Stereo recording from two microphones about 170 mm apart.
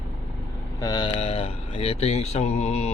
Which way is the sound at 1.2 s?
35° left (ahead or behind).